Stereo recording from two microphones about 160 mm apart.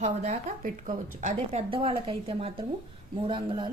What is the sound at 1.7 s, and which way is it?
A woman's voice, 35° right (ahead or behind).